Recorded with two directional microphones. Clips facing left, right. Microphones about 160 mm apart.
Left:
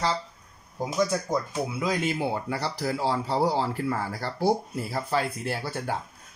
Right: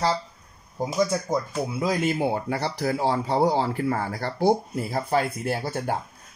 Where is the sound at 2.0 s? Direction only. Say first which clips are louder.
Right 3 dB; 50° right (ahead or behind).